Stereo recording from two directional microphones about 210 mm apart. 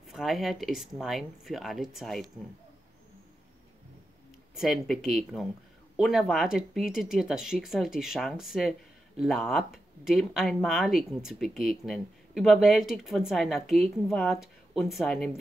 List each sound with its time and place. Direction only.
0.1 s speech: centre (ahead or behind)
4.6 s speech: centre (ahead or behind)